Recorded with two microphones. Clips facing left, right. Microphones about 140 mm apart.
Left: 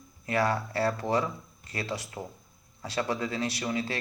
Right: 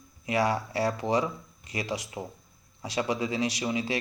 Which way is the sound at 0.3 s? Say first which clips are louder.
Right 1 dB; 15° right (ahead or behind).